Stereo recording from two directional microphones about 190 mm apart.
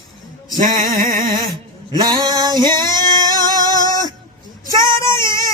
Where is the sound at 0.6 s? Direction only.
45° right (ahead or behind).